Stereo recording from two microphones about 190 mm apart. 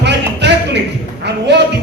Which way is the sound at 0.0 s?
65° right (ahead or behind).